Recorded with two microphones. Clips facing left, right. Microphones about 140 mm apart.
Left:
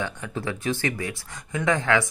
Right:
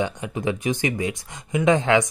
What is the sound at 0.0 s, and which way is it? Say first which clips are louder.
Speech: right 5 dB; 15° right (ahead or behind).